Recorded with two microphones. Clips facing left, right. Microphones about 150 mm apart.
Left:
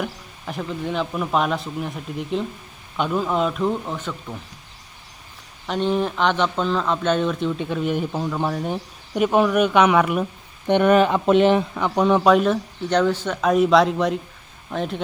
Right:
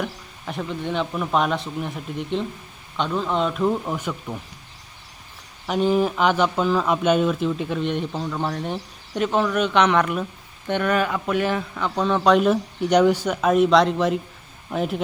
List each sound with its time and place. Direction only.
0.0 s speech: centre (ahead or behind)
5.6 s speech: 5° right (ahead or behind)
10.7 s speech: 20° left (ahead or behind)
12.2 s speech: centre (ahead or behind)
12.9 s speech: 10° right (ahead or behind)